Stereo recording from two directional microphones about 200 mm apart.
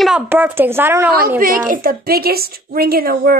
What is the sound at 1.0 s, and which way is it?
A woman's voice, 50° right (ahead or behind).